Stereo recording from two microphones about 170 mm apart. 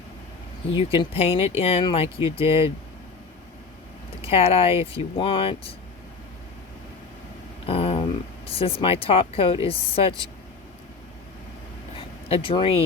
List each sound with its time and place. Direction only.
0.8 s a woman's voice: 30° left (ahead or behind)
4.1 s a woman's voice: 35° left (ahead or behind)
7.7 s a sound: 35° left (ahead or behind)
8.4 s a woman's voice: 35° left (ahead or behind)
11.9 s vehicle: 30° left (ahead or behind)